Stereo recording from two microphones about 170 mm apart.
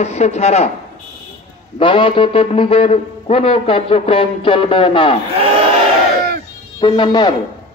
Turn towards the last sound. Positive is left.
turn(degrees=25)  # may be behind; listen again after turning